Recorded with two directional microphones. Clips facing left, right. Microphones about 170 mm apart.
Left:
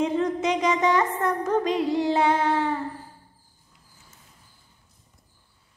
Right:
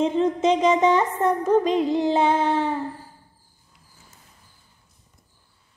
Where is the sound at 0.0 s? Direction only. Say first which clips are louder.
Right 3 dB; 20° right (ahead or behind).